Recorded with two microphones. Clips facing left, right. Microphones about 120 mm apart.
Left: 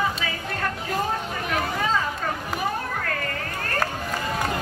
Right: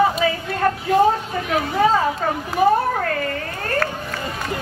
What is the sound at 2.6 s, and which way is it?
Children playing, 40° right (ahead or behind).